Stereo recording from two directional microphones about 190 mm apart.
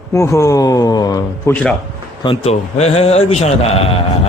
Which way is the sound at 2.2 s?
30° left (ahead or behind).